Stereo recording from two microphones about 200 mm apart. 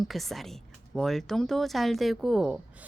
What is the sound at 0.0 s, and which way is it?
Speech, centre (ahead or behind).